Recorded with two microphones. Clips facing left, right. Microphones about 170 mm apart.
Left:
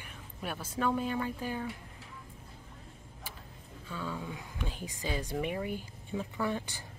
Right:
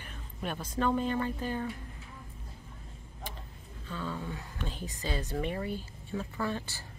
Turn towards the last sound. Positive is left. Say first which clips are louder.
# left 1 dB
turn(degrees=15)  # may be behind; listen again after turning